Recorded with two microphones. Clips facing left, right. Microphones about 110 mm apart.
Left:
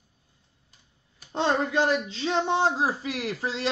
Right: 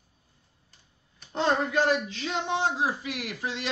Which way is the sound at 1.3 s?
25° left (ahead or behind).